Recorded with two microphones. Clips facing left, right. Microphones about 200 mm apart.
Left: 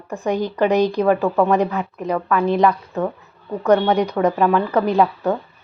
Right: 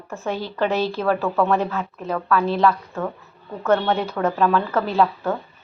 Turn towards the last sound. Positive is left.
turn(degrees=15)  # may be behind; listen again after turning